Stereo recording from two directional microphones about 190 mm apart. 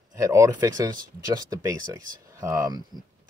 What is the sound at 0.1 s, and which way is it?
Speech, 15° right (ahead or behind).